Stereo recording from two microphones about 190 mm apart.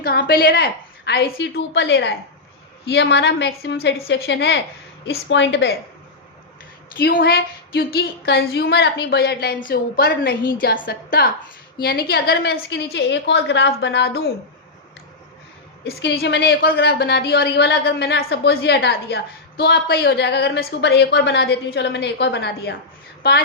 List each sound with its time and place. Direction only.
0.0 s a woman's voice: 55° left (ahead or behind)
7.0 s a woman's voice: 55° left (ahead or behind)
15.8 s a woman's voice: 60° left (ahead or behind)